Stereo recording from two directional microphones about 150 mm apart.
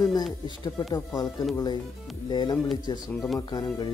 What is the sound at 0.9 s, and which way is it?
Speech, 25° left (ahead or behind).